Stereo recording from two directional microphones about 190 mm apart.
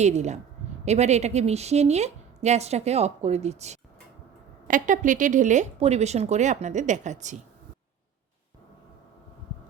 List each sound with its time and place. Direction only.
0.0 s a woman's voice: 35° right (ahead or behind)